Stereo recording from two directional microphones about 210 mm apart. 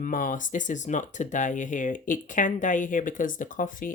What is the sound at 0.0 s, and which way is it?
Speech, 40° left (ahead or behind).